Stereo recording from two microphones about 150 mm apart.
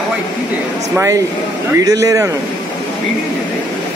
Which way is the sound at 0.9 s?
20° right (ahead or behind).